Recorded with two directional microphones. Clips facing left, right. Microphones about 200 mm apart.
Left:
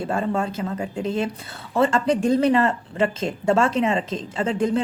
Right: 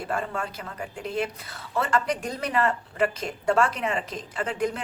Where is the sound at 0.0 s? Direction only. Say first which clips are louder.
Left 6 dB; 25° left (ahead or behind).